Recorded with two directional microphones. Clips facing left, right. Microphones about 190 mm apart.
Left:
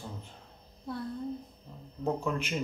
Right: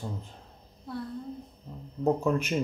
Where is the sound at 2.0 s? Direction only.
40° right (ahead or behind).